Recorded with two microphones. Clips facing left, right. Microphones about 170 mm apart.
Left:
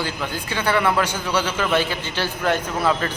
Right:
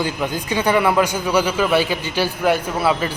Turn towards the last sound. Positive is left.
turn(degrees=-10)  # may be behind; listen again after turning